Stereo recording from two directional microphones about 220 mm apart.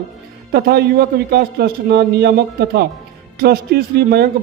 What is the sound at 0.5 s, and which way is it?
Speech, 45° right (ahead or behind).